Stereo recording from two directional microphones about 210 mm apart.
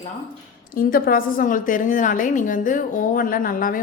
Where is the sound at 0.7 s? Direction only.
45° left (ahead or behind).